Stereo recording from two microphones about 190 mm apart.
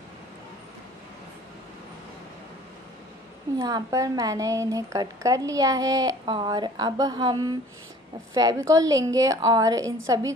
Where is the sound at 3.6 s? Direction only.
15° right (ahead or behind).